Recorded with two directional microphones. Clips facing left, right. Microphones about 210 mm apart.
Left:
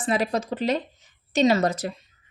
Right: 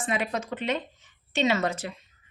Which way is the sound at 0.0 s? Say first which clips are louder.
Left 5 dB; 35° left (ahead or behind).